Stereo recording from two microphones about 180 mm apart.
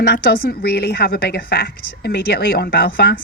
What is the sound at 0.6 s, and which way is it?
A woman's voice, 60° left (ahead or behind).